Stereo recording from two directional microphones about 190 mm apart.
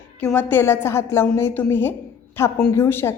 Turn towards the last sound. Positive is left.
turn(degrees=10)  # may be behind; listen again after turning